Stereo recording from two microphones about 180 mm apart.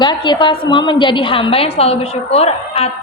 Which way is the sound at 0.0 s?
25° left (ahead or behind).